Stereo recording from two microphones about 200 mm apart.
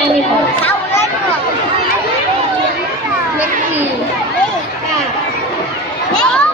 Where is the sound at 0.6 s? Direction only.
15° left (ahead or behind).